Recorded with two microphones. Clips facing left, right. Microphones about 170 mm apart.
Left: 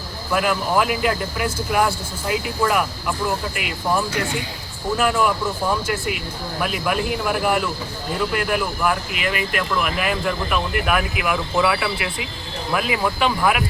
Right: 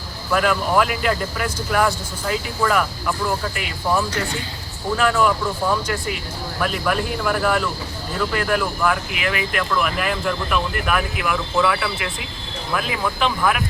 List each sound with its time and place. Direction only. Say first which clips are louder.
0.3 s speech: right 1 dB; 5° left (ahead or behind)
6.6 s speech: right 1 dB; 5° left (ahead or behind)
13.1 s speech: right 1 dB; 10° left (ahead or behind)